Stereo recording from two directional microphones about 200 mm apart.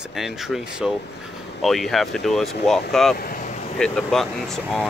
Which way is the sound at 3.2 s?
45° left (ahead or behind).